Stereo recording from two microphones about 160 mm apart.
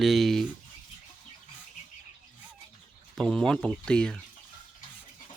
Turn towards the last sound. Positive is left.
turn(degrees=5)  # may be behind; listen again after turning